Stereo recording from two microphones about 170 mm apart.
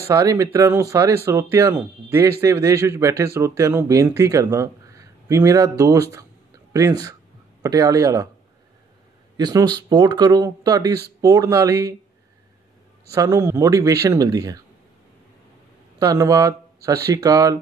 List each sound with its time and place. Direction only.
0.1 s speech: 20° right (ahead or behind)
9.4 s speech: 20° right (ahead or behind)
13.1 s speech: 15° right (ahead or behind)
16.0 s speech: 20° right (ahead or behind)